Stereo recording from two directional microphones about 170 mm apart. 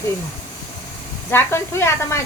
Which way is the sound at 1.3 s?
15° left (ahead or behind).